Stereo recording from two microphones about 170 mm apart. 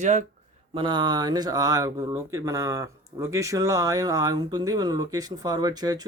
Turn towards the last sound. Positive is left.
turn(degrees=-25)  # may be behind; listen again after turning